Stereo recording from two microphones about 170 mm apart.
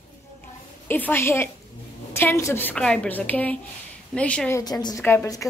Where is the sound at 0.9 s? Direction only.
10° left (ahead or behind).